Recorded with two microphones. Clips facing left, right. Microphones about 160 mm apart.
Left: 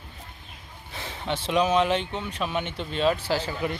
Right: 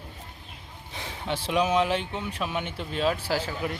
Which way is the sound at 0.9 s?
10° right (ahead or behind).